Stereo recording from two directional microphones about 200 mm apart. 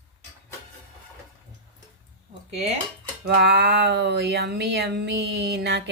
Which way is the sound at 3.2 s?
55° right (ahead or behind).